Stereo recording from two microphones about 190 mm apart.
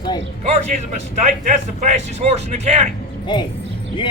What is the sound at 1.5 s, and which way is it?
Speech, 40° right (ahead or behind).